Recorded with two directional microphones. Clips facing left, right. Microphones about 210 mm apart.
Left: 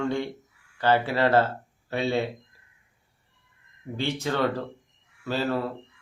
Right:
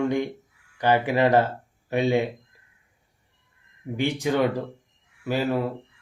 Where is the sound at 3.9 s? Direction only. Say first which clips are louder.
Right 4 dB; 15° right (ahead or behind).